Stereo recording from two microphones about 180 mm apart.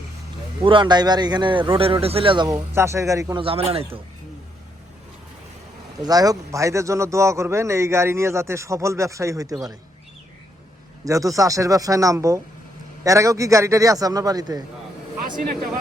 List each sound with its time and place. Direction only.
0.6 s a man's voice: 25° right (ahead or behind)
2.7 s a man's voice: 15° right (ahead or behind)
3.4 s speech: 35° right (ahead or behind)
6.0 s a man's voice: 20° right (ahead or behind)
11.0 s a man's voice: 20° right (ahead or behind)
15.4 s speech: 50° right (ahead or behind)